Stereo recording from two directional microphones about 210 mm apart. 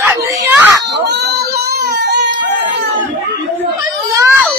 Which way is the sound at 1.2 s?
50° right (ahead or behind).